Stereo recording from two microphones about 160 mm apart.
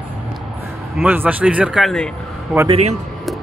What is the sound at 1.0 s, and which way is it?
Speech, 10° right (ahead or behind).